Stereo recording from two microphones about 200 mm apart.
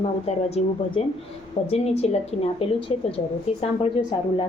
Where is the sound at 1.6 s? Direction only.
30° left (ahead or behind).